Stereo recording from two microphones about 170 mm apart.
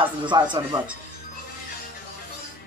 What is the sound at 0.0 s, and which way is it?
Speech, 30° right (ahead or behind).